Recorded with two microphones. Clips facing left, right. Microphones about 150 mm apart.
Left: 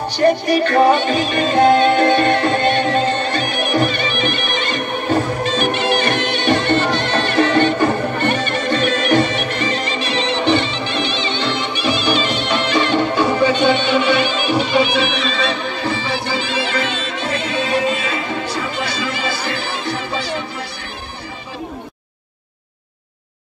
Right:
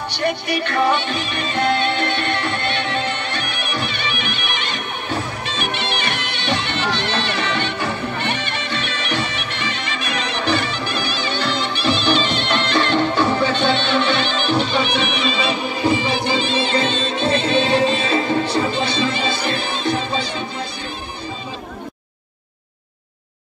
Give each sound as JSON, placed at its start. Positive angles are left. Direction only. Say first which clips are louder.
{"t": 0.1, "sound": "music", "louder": "left 8 dB", "side_deg": 45}